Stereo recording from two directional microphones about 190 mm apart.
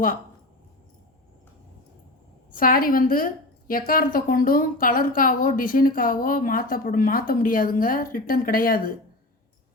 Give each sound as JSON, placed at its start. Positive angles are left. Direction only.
{"t": 2.5, "sound": "a woman's voice", "side_deg": 50}